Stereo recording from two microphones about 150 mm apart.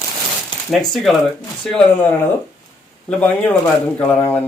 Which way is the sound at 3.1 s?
10° left (ahead or behind).